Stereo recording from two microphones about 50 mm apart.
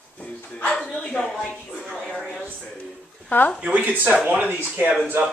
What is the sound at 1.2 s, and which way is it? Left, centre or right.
Speech, centre.